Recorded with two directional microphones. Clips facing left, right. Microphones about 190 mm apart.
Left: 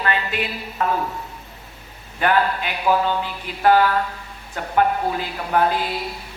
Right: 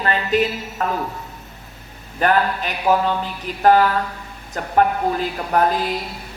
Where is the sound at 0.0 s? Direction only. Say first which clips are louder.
Right 5 dB; 40° right (ahead or behind).